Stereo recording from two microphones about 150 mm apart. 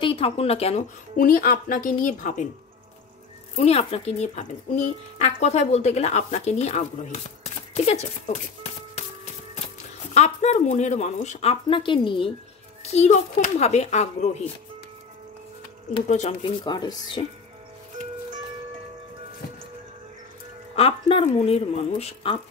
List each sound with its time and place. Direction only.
0.0 s speech: 40° left (ahead or behind)
1.1 s speech: 70° left (ahead or behind)
3.5 s speech: 45° left (ahead or behind)
10.1 s speech: 50° left (ahead or behind)
12.8 s speech: 45° left (ahead or behind)
16.1 s speech: 50° left (ahead or behind)
16.6 s speech: 30° left (ahead or behind)
20.7 s speech: 40° left (ahead or behind)